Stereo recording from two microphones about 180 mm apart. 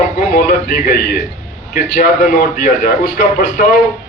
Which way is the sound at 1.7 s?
55° left (ahead or behind).